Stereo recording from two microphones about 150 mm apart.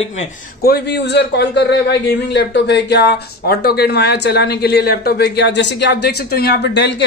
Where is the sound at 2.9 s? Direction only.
90° left.